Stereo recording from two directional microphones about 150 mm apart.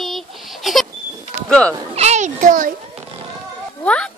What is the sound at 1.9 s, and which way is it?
Children playing, 45° right (ahead or behind).